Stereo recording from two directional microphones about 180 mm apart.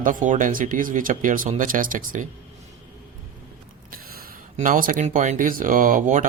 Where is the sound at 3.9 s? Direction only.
50° right (ahead or behind).